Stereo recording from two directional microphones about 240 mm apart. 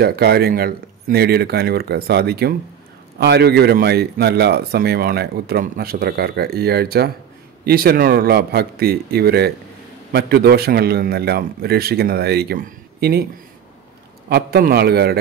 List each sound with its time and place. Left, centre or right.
0.0 s speech: right
14.3 s speech: right